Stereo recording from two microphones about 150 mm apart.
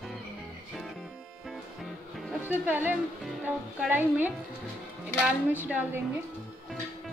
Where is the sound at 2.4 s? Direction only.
10° right (ahead or behind).